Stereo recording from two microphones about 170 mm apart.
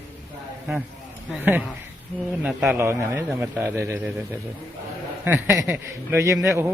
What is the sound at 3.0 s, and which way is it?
Speech, 15° right (ahead or behind).